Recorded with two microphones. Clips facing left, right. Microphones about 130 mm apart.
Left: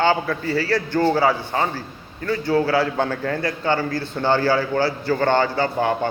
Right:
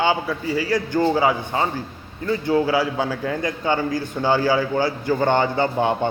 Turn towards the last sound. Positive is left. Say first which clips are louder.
# right 1 dB
turn(degrees=-20)  # may be behind; listen again after turning